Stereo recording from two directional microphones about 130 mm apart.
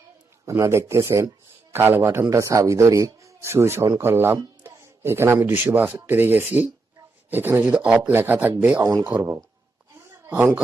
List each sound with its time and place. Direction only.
0.4 s speech: 20° right (ahead or behind)